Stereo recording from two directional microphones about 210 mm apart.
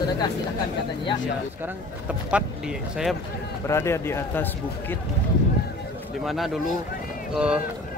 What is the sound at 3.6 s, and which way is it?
A man's voice, 15° left (ahead or behind).